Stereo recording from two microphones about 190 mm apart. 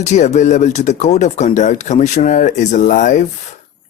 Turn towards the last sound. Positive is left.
turn(degrees=40)  # may be behind; listen again after turning